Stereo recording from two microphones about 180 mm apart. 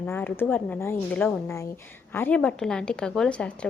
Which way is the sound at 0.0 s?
10° left (ahead or behind).